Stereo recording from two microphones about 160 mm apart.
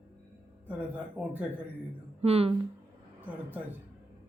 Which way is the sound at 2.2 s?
40° right (ahead or behind).